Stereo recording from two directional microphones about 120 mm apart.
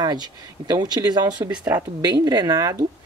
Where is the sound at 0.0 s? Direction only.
35° right (ahead or behind).